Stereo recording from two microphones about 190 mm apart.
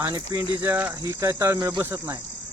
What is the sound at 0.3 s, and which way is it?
Speech, 10° right (ahead or behind).